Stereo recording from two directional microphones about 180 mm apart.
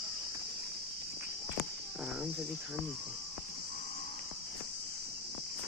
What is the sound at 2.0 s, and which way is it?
Cricket, centre (ahead or behind).